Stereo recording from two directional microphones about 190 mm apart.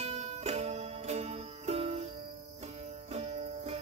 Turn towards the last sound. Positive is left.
turn(degrees=-35)  # may be behind; listen again after turning